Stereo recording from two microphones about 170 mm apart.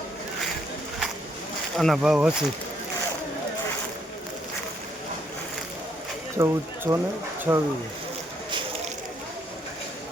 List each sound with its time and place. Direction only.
1.7 s speech: centre (ahead or behind)
6.3 s speech: 15° right (ahead or behind)